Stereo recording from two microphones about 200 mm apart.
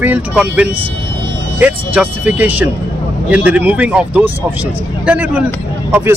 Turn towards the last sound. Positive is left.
turn(degrees=-10)  # may be behind; listen again after turning